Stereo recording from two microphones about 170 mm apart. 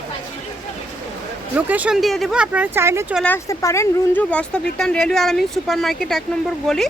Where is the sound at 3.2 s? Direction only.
15° left (ahead or behind).